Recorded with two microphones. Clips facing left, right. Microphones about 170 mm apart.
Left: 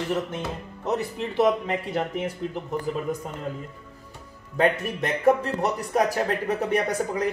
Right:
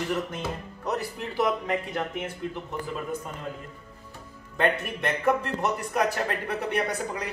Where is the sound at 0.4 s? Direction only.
20° left (ahead or behind).